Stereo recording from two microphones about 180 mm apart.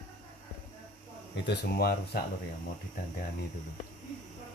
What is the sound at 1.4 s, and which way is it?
Speech, 60° left (ahead or behind).